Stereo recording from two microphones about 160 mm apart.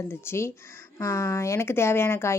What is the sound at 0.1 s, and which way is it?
Speech, 15° left (ahead or behind).